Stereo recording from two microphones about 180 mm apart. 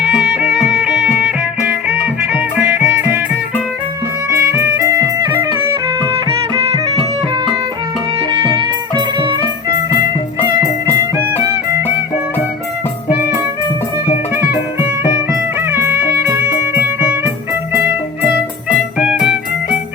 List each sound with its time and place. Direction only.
0.2 s music: 10° right (ahead or behind)
4.4 s music: 15° right (ahead or behind)
6.5 s music: 25° right (ahead or behind)
8.3 s music: 25° right (ahead or behind)
10.4 s music: 20° right (ahead or behind)
15.0 s music: 15° right (ahead or behind)
18.9 s music: 5° right (ahead or behind)